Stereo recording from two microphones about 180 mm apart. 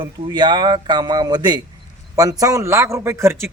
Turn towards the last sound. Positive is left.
turn(degrees=-15)  # may be behind; listen again after turning